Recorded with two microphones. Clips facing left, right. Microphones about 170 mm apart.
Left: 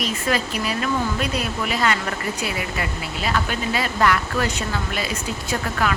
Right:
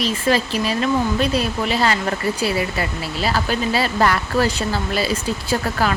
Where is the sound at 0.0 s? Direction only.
30° right (ahead or behind).